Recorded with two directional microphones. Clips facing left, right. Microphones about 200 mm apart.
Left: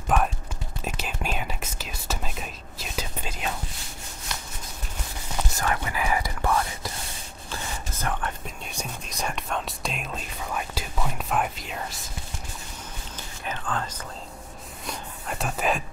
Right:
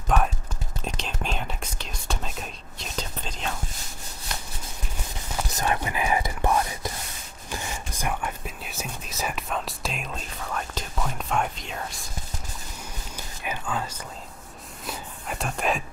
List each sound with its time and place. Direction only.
0.8 s whispering: 5° left (ahead or behind)
5.5 s whispering: 20° right (ahead or behind); by 12.0 s centre (ahead or behind)
13.1 s whispering: 10° right (ahead or behind)